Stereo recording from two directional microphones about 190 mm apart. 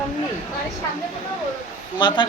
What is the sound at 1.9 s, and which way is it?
Speech, 25° left (ahead or behind).